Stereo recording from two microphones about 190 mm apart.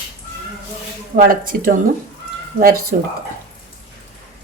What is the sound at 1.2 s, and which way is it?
A woman's voice, 50° right (ahead or behind).